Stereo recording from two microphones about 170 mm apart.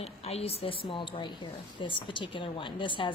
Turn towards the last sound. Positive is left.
turn(degrees=30)  # may be behind; listen again after turning